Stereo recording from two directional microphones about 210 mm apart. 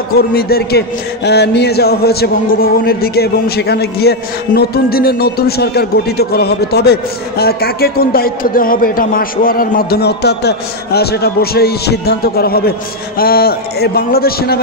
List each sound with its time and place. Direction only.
0.3 s a man's voice: 45° left (ahead or behind)